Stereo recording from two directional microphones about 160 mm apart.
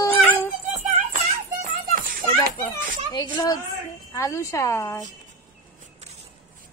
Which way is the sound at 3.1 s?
25° left (ahead or behind).